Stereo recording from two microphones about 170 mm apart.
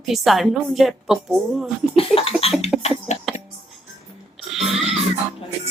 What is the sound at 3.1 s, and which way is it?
Music, 40° left (ahead or behind).